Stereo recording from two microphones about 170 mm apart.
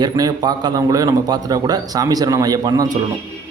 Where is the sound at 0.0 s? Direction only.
20° right (ahead or behind).